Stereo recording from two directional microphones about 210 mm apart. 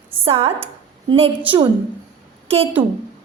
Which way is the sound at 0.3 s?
30° right (ahead or behind).